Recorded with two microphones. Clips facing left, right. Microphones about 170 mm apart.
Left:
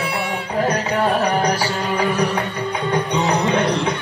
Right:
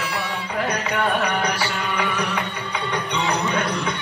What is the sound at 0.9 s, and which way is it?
Music, 35° left (ahead or behind).